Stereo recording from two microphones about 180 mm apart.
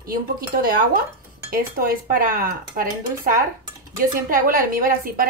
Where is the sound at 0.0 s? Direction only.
55° right (ahead or behind).